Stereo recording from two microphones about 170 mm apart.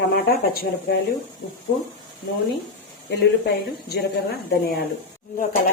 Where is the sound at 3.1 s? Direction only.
80° left.